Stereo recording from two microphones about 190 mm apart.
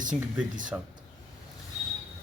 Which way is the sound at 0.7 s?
15° right (ahead or behind).